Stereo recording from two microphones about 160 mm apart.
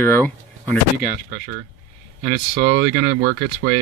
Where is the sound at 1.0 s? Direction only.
70° right (ahead or behind).